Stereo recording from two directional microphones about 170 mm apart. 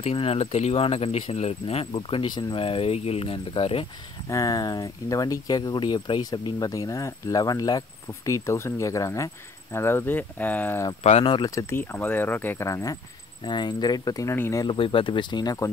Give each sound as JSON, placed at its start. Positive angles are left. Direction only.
{"t": 0.0, "sound": "speech", "side_deg": 35}
{"t": 4.3, "sound": "speech", "side_deg": 20}
{"t": 11.0, "sound": "speech", "side_deg": 40}